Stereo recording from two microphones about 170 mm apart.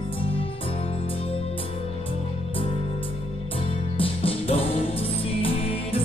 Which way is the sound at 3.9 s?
35° left (ahead or behind).